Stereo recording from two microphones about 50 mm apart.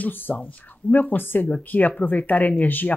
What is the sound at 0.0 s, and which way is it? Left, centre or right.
A woman's voice, left.